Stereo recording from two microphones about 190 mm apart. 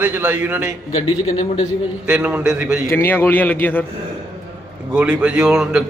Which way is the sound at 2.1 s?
5° right (ahead or behind).